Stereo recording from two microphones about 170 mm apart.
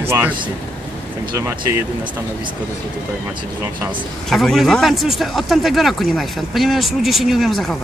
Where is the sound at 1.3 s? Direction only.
20° right (ahead or behind).